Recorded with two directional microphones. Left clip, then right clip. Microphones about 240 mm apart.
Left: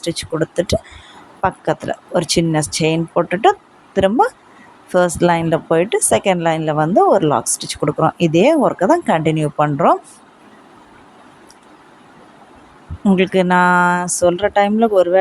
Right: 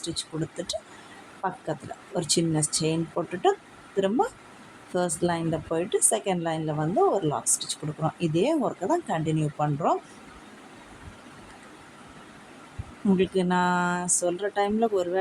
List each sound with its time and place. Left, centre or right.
0.0 s a woman's voice: left
13.1 s a woman's voice: left